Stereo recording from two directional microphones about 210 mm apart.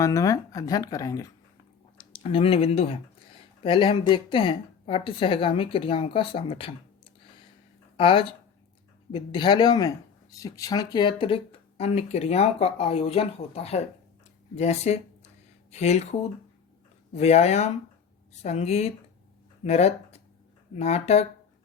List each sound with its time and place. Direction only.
0.0 s speech: 15° left (ahead or behind)
7.9 s speech: 25° left (ahead or behind)
17.2 s speech: 30° left (ahead or behind)